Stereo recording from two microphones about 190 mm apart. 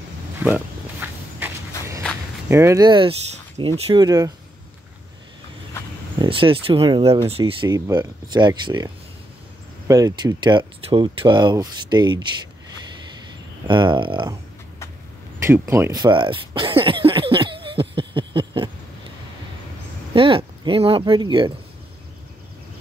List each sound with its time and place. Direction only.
0.4 s speech: 10° right (ahead or behind)
2.4 s speech: 15° right (ahead or behind)
6.1 s speech: 25° right (ahead or behind)
13.7 s speech: 25° right (ahead or behind)
15.3 s a sound: 10° right (ahead or behind)
20.2 s speech: 25° right (ahead or behind)